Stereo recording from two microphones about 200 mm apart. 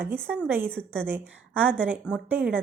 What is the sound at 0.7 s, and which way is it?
Speech, 5° left (ahead or behind).